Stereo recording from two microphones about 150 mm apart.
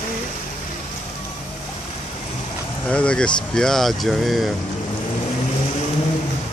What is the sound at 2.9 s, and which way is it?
Speech, 5° left (ahead or behind).